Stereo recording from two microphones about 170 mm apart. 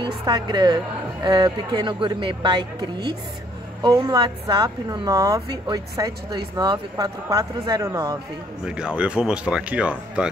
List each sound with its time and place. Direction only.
0.0 s a woman's voice: 25° right (ahead or behind)
8.6 s speech: 5° right (ahead or behind)